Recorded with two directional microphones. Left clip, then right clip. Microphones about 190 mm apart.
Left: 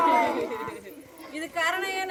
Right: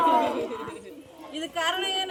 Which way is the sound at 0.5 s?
15° right (ahead or behind).